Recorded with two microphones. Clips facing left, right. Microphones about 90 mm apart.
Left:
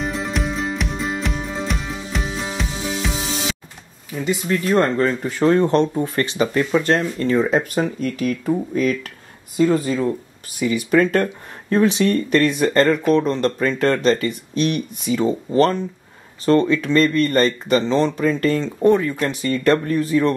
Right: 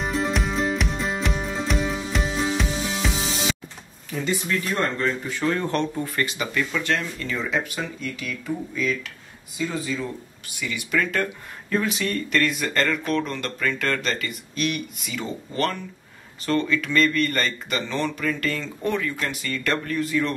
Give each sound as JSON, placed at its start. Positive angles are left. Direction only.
{"t": 0.0, "sound": "music", "side_deg": 0}
{"t": 4.5, "sound": "speech", "side_deg": 40}
{"t": 5.6, "sound": "speech", "side_deg": 20}
{"t": 11.7, "sound": "speech", "side_deg": 30}